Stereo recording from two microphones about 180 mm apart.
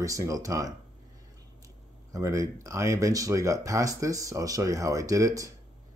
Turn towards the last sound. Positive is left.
turn(degrees=-20)  # may be behind; listen again after turning